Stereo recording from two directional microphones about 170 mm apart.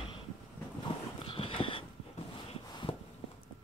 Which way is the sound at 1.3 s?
30° left (ahead or behind).